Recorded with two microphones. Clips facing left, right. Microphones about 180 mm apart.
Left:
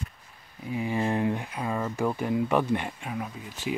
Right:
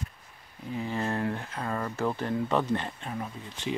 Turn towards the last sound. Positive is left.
turn(degrees=10)  # may be behind; listen again after turning